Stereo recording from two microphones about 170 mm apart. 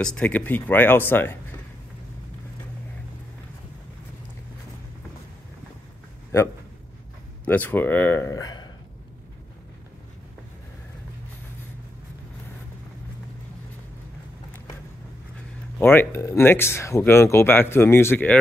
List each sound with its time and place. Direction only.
0.0 s speech: 5° left (ahead or behind)
6.3 s speech: 15° left (ahead or behind)
15.8 s speech: 10° left (ahead or behind)